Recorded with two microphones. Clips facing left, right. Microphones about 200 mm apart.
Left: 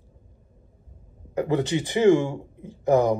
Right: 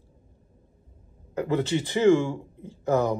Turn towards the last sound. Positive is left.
turn(degrees=15)  # may be behind; listen again after turning